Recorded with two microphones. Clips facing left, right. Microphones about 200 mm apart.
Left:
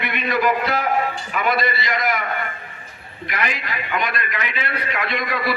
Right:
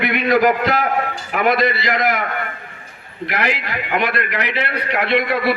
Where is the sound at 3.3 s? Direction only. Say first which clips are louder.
Right 4 dB; 70° right (ahead or behind).